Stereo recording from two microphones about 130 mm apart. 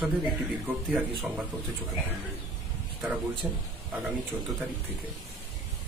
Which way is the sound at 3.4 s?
5° right (ahead or behind).